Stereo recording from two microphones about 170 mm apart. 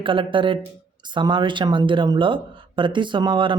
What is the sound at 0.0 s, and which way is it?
Speech, 30° right (ahead or behind).